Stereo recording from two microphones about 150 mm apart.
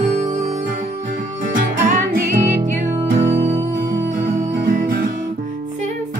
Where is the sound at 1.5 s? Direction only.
65° right (ahead or behind).